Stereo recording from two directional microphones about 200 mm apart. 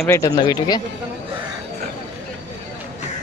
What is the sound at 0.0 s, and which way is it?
Speech, 15° left (ahead or behind).